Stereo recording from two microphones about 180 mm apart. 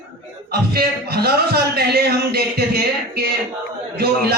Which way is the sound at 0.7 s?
60° right (ahead or behind).